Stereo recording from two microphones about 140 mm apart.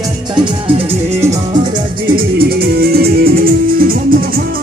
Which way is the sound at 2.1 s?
90° right.